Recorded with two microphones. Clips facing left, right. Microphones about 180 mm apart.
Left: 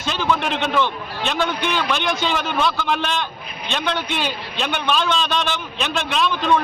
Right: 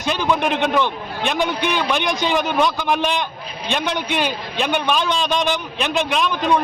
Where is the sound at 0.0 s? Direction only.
15° right (ahead or behind).